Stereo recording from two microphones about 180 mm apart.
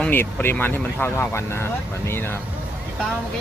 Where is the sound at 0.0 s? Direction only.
10° left (ahead or behind).